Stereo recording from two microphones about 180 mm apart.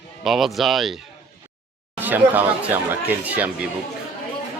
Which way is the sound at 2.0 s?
10° right (ahead or behind).